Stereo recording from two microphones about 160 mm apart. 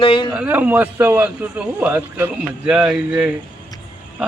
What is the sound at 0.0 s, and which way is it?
Speech, 30° left (ahead or behind).